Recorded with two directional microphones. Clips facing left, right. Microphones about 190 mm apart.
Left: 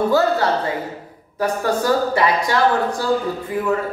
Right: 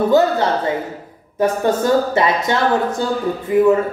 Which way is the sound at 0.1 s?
20° right (ahead or behind).